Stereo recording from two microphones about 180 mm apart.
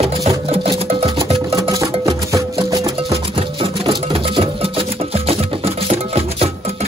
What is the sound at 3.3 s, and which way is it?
Music, 30° right (ahead or behind).